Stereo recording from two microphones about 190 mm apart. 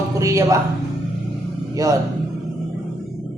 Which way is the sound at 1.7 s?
20° right (ahead or behind).